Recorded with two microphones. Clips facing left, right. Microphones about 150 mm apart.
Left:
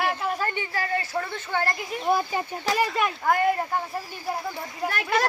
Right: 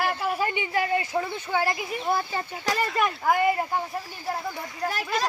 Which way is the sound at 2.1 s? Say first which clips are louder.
Left 2 dB; 15° left (ahead or behind).